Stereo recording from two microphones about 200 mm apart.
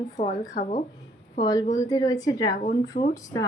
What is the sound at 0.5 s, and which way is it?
Speech, 35° left (ahead or behind).